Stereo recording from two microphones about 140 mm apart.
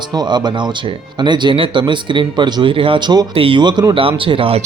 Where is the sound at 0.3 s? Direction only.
30° right (ahead or behind).